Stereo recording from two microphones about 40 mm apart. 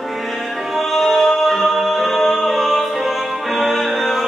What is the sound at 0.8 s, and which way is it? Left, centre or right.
Music, centre.